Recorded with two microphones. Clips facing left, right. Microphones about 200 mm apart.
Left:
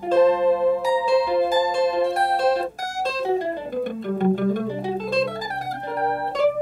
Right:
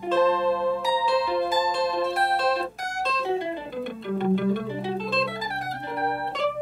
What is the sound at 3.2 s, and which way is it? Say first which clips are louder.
Music: left 5 dB; 45° left (ahead or behind).